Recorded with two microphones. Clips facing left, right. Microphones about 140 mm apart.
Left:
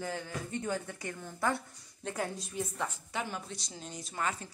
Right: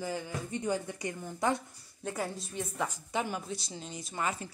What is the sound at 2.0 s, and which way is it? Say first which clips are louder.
Speech: right 1 dB; centre (ahead or behind).